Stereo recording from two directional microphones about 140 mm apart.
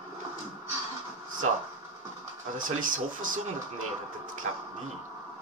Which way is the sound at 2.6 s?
75° right (ahead or behind).